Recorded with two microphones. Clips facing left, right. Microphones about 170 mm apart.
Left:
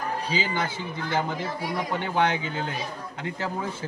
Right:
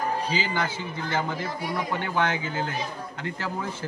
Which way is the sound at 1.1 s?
15° left (ahead or behind).